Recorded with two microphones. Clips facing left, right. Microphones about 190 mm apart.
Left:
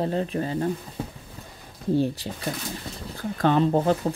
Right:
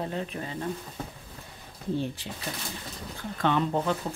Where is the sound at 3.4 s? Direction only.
40° left (ahead or behind).